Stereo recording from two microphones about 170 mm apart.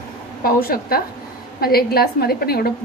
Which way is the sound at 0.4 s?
60° left (ahead or behind).